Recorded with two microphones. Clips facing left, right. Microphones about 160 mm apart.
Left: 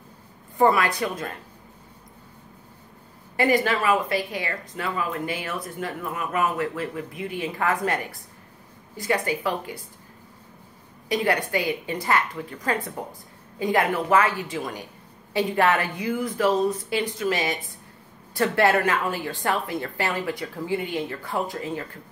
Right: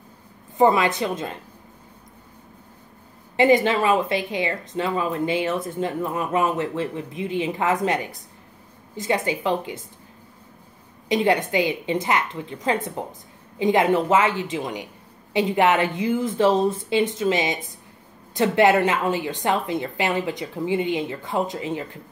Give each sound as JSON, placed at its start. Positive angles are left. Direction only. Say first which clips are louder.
{"t": 0.6, "sound": "speech", "louder": "right 2 dB", "side_deg": -20}
{"t": 3.3, "sound": "speech", "louder": "right 4 dB", "side_deg": -25}
{"t": 11.1, "sound": "speech", "louder": "right 4 dB", "side_deg": -20}